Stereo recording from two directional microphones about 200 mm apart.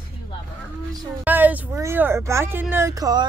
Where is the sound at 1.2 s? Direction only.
10° right (ahead or behind).